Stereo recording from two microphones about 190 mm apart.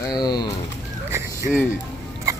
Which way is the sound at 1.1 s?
15° right (ahead or behind).